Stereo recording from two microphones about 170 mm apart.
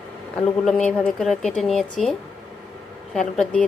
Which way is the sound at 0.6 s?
Centre (ahead or behind).